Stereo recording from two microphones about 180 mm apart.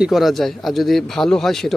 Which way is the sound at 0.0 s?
Centre (ahead or behind).